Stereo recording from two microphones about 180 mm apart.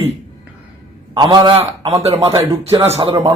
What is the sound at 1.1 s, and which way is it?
A man's voice, 25° right (ahead or behind).